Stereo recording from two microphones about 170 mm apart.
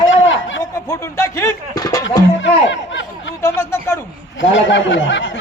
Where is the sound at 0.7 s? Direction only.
15° left (ahead or behind).